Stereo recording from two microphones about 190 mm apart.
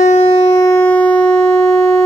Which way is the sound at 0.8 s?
10° left (ahead or behind).